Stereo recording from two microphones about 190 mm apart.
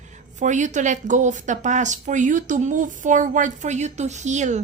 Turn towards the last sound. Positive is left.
turn(degrees=-40)  # may be behind; listen again after turning